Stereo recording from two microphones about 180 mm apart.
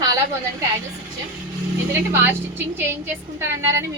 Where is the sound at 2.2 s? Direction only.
10° right (ahead or behind).